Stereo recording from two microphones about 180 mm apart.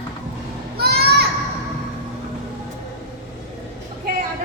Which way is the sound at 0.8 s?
60° right (ahead or behind).